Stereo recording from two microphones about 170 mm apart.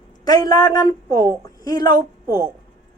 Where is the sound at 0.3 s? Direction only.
20° left (ahead or behind).